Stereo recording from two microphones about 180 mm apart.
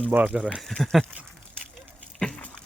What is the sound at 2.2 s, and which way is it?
Dog, 5° left (ahead or behind).